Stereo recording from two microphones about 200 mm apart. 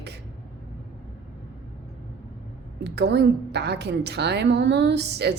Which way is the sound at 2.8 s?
55° right (ahead or behind).